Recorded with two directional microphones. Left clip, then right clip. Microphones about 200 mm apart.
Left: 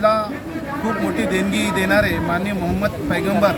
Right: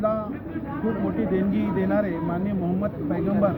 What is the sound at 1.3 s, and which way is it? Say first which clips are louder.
Speech: left 6 dB; centre (ahead or behind).